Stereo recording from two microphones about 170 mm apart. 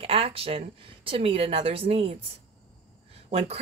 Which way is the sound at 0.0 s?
35° right (ahead or behind).